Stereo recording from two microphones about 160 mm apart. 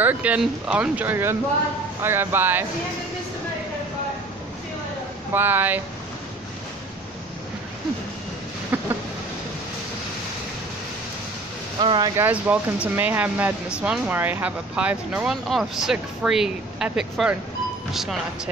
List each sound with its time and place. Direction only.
0.0 s speech: 10° right (ahead or behind)
5.3 s speech: 10° right (ahead or behind)
11.8 s speech: 30° right (ahead or behind)
12.2 s speech: 10° right (ahead or behind)